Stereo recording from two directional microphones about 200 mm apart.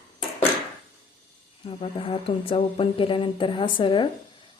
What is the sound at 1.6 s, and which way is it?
Speech, 30° left (ahead or behind).